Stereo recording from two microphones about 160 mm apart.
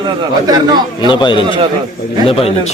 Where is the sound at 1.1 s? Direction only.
30° left (ahead or behind).